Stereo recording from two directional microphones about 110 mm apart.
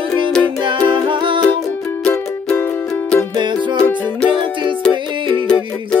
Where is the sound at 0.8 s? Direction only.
50° right (ahead or behind).